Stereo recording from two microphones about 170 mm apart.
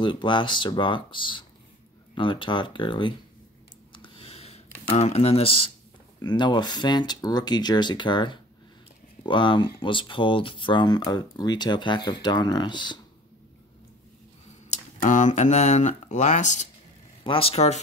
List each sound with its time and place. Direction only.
0.0 s speech: 30° left (ahead or behind)
3.9 s a sound: 30° left (ahead or behind)
4.9 s speech: 40° left (ahead or behind)
14.7 s speech: 45° left (ahead or behind)
17.2 s a man's voice: 35° left (ahead or behind)